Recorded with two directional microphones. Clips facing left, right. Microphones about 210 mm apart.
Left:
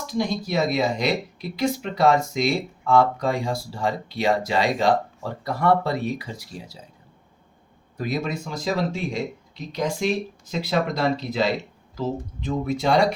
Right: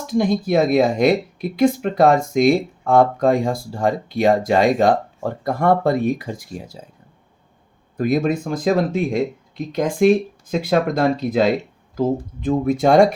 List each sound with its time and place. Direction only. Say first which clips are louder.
0.1 s speech: right 7 dB; 50° right (ahead or behind)
7.9 s speech: right 8 dB; 50° right (ahead or behind)